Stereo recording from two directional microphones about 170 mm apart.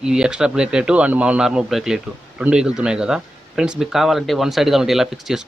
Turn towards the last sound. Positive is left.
turn(degrees=0)  # may be behind; listen again after turning